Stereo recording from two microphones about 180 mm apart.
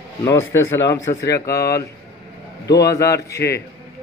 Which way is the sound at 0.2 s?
15° left (ahead or behind).